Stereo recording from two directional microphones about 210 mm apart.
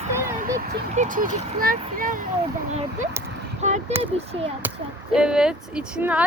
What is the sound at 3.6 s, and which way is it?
Speech, 35° right (ahead or behind).